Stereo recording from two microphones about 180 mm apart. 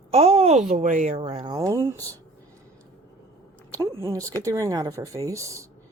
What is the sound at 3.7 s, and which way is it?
Speech, 15° right (ahead or behind).